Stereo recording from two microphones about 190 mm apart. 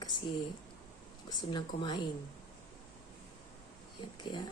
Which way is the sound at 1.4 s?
20° left (ahead or behind).